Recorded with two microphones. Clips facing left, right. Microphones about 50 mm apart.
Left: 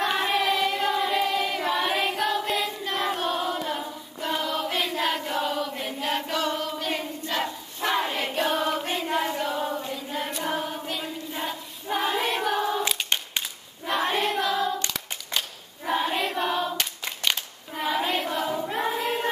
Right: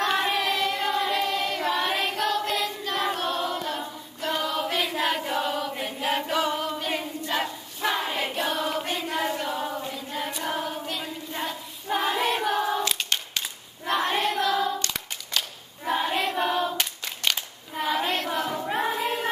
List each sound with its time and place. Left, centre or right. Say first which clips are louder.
0.0 s child singing: even; centre
3.1 s choir: left 1 dB; centre
7.3 s battle cry: left 1 dB; centre
8.3 s choir: left 2 dB; centre
8.8 s choir: left 1 dB; centre
9.1 s choir: left 2 dB; centre
14.1 s singing: right 1 dB; centre
15.8 s choir: even; centre
17.7 s child singing: even; centre
18.3 s choir: even; centre